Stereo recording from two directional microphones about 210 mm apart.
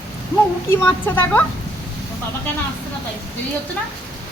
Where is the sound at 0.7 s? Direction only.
10° left (ahead or behind).